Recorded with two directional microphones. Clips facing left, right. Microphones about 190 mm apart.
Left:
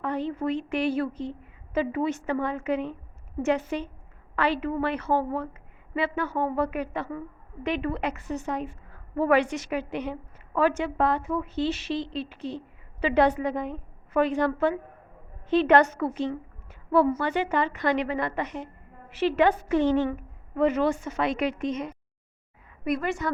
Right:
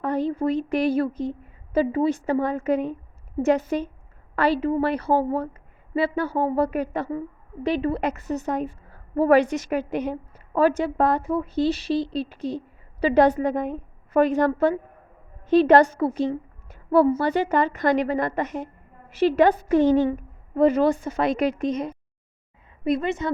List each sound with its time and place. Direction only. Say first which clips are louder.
0.0 s a woman's voice: right 5 dB; 40° right (ahead or behind)
22.8 s a woman's voice: right 4 dB; 25° right (ahead or behind)